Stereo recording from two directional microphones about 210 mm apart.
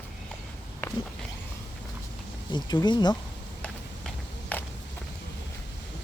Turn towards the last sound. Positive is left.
turn(degrees=10)  # may be behind; listen again after turning